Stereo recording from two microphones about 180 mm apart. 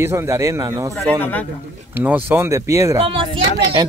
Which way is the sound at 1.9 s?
10° right (ahead or behind).